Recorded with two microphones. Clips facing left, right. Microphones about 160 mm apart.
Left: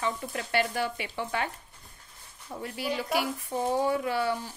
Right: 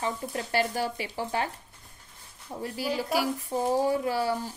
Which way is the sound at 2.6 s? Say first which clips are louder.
Right 2 dB; 35° right (ahead or behind).